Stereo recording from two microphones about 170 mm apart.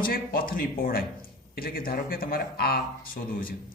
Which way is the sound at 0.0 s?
60° left (ahead or behind).